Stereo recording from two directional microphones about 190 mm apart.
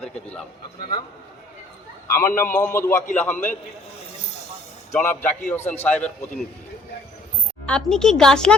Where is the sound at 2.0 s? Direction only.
15° left (ahead or behind).